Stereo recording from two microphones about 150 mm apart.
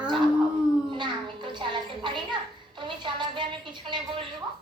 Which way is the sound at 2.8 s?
35° right (ahead or behind).